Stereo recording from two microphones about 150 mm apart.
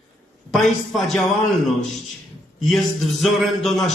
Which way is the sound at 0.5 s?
Centre (ahead or behind).